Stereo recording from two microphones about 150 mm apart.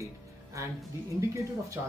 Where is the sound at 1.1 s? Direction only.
20° right (ahead or behind).